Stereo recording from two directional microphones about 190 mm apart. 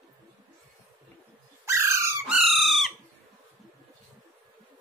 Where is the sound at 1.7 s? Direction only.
15° right (ahead or behind).